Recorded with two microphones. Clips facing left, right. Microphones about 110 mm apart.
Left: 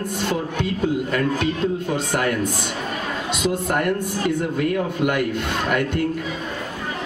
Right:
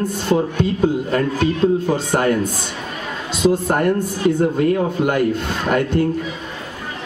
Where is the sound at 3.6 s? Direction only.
30° right (ahead or behind).